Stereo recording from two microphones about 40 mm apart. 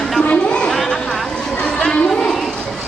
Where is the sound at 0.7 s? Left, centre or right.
Centre.